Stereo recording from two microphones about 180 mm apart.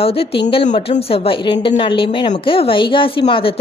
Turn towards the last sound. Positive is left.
turn(degrees=30)  # may be behind; listen again after turning